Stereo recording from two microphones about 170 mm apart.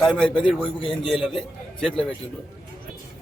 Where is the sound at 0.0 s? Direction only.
5° left (ahead or behind).